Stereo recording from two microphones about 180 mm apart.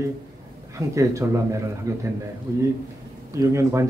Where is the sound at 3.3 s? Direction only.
15° right (ahead or behind).